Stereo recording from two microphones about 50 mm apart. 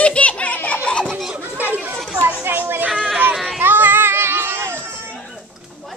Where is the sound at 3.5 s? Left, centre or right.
Right.